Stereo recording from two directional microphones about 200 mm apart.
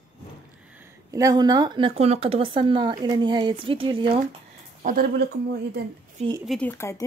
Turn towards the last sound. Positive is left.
turn(degrees=15)  # may be behind; listen again after turning